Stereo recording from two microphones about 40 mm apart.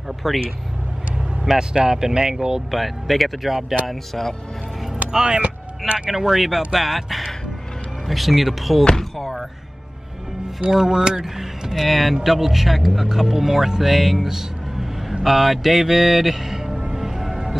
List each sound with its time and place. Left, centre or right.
0.2 s speech: centre
1.7 s speech: centre
2.7 s speech: centre
5.1 s speech: right
6.0 s speech: centre
8.9 s a sound: centre
10.7 s speech: centre
16.9 s music: centre